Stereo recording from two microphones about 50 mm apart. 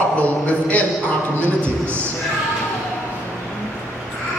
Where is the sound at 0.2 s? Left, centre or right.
Left.